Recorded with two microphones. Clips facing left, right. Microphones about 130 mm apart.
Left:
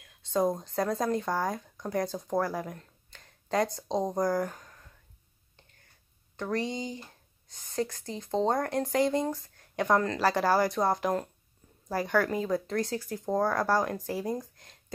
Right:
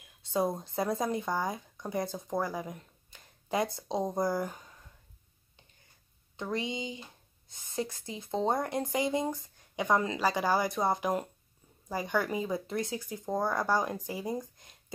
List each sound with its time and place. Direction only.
0.3 s speech: 5° right (ahead or behind)
2.8 s finger snapping: 10° right (ahead or behind)
3.9 s speech: 5° right (ahead or behind)
6.5 s speech: 20° right (ahead or behind)
7.6 s speech: 5° right (ahead or behind)